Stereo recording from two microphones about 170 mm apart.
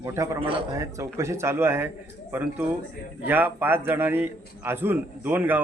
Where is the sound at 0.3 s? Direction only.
30° right (ahead or behind).